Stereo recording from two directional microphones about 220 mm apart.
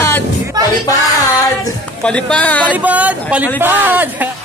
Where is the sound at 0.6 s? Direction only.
15° right (ahead or behind).